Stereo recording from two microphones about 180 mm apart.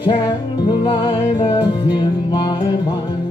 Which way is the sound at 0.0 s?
25° left (ahead or behind).